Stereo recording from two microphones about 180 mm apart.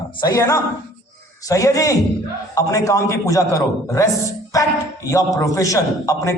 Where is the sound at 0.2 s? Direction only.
20° left (ahead or behind).